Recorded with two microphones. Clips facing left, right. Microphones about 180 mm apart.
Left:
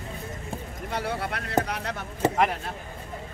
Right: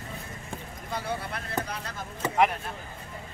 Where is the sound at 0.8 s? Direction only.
70° left (ahead or behind).